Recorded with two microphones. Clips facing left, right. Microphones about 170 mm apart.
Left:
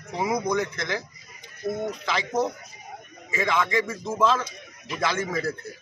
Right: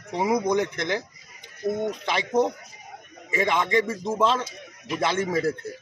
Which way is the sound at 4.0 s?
15° right (ahead or behind).